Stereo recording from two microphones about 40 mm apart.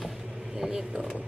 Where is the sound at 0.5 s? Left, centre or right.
Centre.